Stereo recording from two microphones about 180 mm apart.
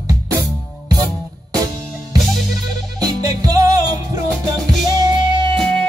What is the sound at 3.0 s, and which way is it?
Music, 20° right (ahead or behind).